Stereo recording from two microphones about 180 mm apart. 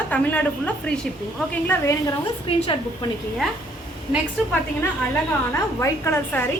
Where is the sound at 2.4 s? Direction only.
30° left (ahead or behind).